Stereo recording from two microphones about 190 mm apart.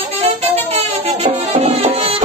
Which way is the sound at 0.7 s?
35° right (ahead or behind).